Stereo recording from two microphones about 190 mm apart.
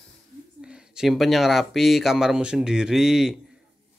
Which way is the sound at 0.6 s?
5° right (ahead or behind).